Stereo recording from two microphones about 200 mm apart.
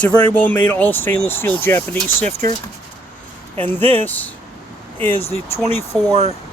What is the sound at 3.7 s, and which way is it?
Speech, 10° left (ahead or behind).